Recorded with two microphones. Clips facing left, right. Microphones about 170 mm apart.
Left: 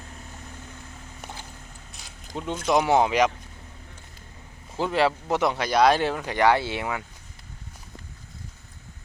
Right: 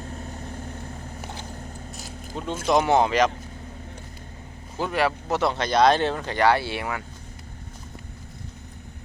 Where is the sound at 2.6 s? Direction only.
10° left (ahead or behind).